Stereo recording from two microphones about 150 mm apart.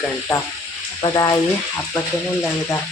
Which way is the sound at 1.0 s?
25° left (ahead or behind).